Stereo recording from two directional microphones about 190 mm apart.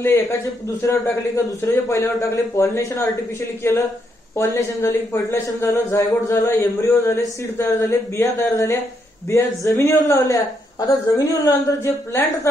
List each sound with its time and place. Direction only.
0.0 s speech: 15° left (ahead or behind)